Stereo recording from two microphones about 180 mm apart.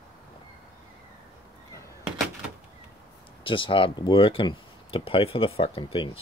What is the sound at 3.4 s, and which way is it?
Speech, 30° left (ahead or behind).